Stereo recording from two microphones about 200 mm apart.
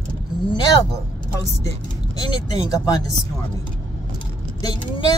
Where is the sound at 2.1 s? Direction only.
20° left (ahead or behind).